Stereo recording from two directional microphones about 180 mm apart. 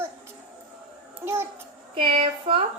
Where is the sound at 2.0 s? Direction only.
30° right (ahead or behind).